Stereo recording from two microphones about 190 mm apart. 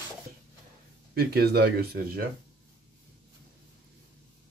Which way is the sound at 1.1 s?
55° right (ahead or behind).